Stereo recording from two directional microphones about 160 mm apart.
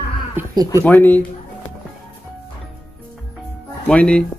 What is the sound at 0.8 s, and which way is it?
Speech, 10° left (ahead or behind).